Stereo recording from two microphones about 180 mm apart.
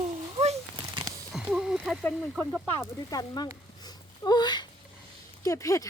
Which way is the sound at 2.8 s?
20° left (ahead or behind).